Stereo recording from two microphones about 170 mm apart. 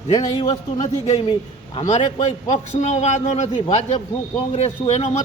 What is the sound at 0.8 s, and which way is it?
A man's voice, 40° left (ahead or behind).